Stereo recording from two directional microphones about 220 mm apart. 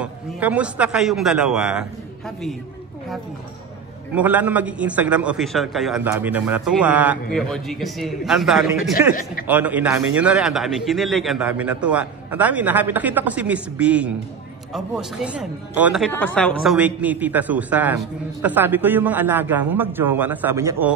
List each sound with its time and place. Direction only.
0.0 s speech: 5° right (ahead or behind)
4.1 s a man's voice: 5° right (ahead or behind)
9.1 s a man's voice: 40° left (ahead or behind)
9.5 s a man's voice: 5° right (ahead or behind)
16.7 s a man's voice: 5° right (ahead or behind)